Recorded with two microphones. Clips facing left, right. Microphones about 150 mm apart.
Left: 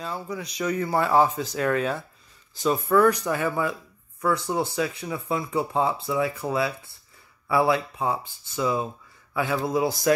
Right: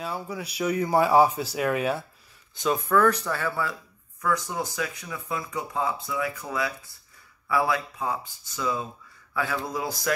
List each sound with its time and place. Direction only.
0.0 s speech: 10° right (ahead or behind)
2.5 s speech: centre (ahead or behind); by 10.1 s 25° left (ahead or behind)